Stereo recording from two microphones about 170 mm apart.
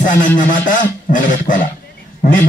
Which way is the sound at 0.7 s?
50° left (ahead or behind).